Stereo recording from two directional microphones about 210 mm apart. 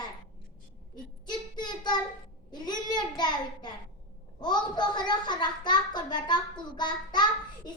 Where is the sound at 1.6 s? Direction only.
20° left (ahead or behind).